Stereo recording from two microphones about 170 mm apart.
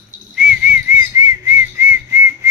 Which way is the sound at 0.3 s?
5° right (ahead or behind).